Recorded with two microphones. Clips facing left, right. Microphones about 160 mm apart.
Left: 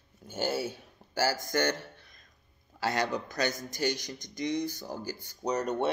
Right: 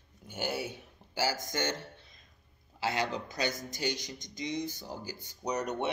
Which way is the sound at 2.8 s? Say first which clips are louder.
Left 2 dB; 45° left (ahead or behind).